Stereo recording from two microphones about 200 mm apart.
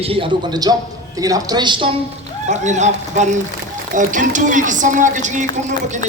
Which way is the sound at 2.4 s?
35° right (ahead or behind).